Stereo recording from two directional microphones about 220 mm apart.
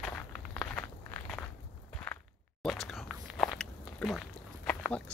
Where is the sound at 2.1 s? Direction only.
5° left (ahead or behind).